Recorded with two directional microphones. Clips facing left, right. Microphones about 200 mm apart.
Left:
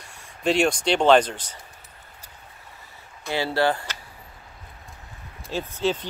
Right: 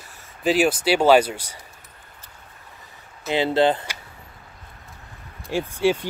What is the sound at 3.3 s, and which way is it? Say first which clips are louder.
Speech: right 4 dB; 20° right (ahead or behind).